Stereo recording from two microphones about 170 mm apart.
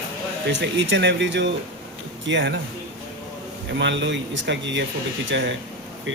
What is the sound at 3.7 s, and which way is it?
Speech, 90° right.